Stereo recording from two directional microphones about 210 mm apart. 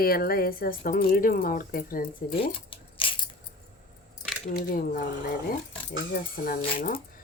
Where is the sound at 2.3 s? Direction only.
25° left (ahead or behind).